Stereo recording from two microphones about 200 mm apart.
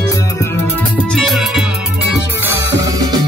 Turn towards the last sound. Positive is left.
turn(degrees=-15)  # may be behind; listen again after turning